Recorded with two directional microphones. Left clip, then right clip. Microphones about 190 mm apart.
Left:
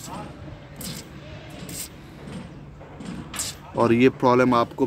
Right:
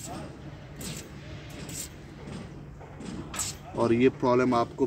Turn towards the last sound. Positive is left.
turn(degrees=40)  # may be behind; listen again after turning